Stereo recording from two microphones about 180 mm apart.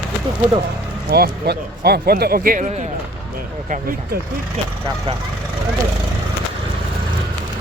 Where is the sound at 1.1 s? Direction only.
60° right (ahead or behind).